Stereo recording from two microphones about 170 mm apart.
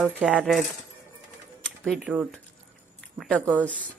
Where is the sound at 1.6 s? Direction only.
5° left (ahead or behind).